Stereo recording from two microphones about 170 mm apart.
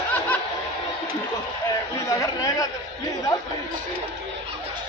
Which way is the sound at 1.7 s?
20° left (ahead or behind).